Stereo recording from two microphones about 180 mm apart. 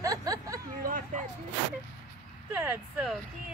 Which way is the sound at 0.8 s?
45° right (ahead or behind).